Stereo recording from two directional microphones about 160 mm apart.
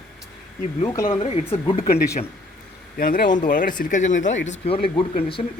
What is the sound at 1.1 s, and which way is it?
Speech, 35° left (ahead or behind).